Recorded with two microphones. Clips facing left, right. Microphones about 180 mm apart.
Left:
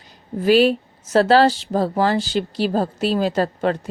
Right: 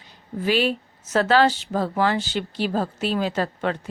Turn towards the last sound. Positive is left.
turn(degrees=40)  # may be behind; listen again after turning